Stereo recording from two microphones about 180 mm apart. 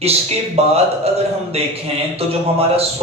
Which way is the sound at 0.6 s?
35° right (ahead or behind).